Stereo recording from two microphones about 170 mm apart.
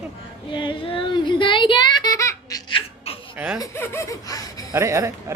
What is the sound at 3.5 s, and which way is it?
Female singing, 15° left (ahead or behind).